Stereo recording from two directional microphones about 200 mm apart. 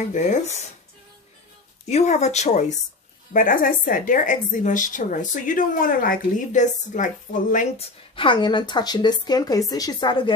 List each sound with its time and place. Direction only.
0.1 s a woman's voice: 40° left (ahead or behind)
1.9 s a woman's voice: 35° left (ahead or behind)
8.2 s speech: 25° left (ahead or behind)